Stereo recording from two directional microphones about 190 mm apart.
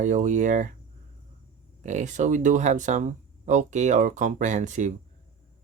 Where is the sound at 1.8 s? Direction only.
40° right (ahead or behind).